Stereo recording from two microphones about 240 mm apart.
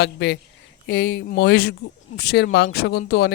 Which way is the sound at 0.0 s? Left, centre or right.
Left.